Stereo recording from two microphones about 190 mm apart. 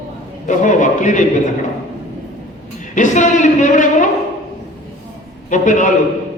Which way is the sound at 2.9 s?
40° left (ahead or behind).